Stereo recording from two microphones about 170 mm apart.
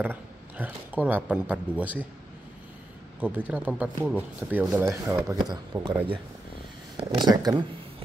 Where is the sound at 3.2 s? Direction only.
10° right (ahead or behind).